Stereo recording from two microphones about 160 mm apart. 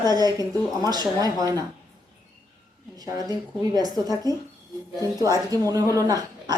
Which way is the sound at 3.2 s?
25° right (ahead or behind).